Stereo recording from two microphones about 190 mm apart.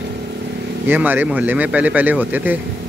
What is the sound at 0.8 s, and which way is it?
Speech, 10° right (ahead or behind).